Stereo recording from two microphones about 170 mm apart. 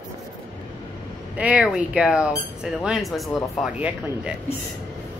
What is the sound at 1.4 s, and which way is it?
Speech, 10° right (ahead or behind).